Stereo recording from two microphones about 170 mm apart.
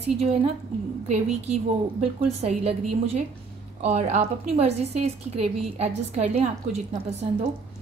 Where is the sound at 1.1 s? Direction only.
40° right (ahead or behind).